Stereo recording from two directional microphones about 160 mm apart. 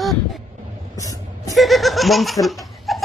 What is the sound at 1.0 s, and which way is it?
Vehicle, 20° left (ahead or behind).